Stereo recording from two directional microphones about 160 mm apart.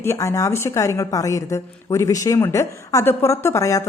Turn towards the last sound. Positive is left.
turn(degrees=20)  # may be behind; listen again after turning